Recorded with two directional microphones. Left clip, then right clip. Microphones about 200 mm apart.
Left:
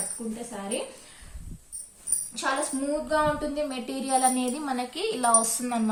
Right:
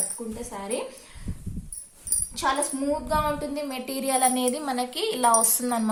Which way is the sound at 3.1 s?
40° right (ahead or behind).